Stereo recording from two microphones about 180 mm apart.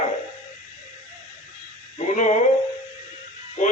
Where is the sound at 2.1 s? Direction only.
40° left (ahead or behind).